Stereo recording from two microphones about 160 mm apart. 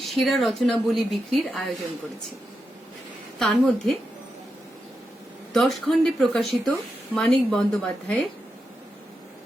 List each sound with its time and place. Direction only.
0.0 s a woman's voice: centre (ahead or behind)
3.3 s a woman's voice: centre (ahead or behind)
5.5 s a woman's voice: centre (ahead or behind)